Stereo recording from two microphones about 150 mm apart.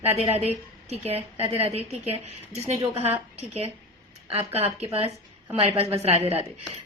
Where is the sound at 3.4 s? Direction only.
45° right (ahead or behind).